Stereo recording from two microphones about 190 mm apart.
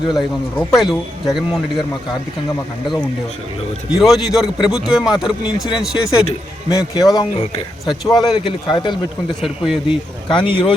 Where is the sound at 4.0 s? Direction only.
Centre (ahead or behind).